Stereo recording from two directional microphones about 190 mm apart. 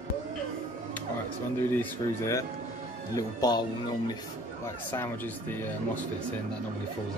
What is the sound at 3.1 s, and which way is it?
Speech, 20° left (ahead or behind).